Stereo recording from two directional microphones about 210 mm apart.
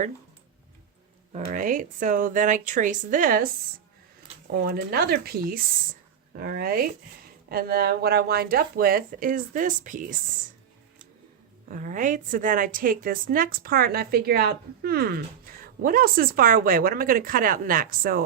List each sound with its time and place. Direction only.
1.3 s speech: 40° right (ahead or behind)
4.6 s a woman's voice: 45° right (ahead or behind)
11.7 s a woman's voice: 40° right (ahead or behind)